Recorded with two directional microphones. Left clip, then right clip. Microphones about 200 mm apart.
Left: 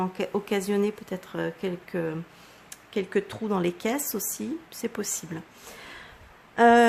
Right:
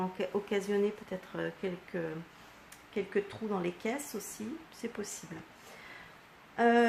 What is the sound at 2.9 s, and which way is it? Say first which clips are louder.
Speech: left 6 dB; 45° left (ahead or behind).